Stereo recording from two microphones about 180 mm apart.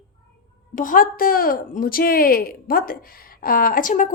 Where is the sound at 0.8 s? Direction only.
50° left (ahead or behind).